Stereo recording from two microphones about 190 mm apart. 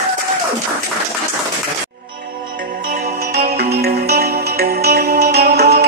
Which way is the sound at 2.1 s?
55° right (ahead or behind).